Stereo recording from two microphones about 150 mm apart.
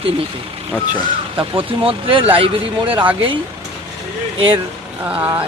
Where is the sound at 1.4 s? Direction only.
35° right (ahead or behind).